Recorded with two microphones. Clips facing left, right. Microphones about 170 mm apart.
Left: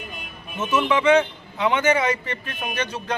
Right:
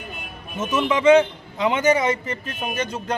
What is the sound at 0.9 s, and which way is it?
Speech, 25° right (ahead or behind).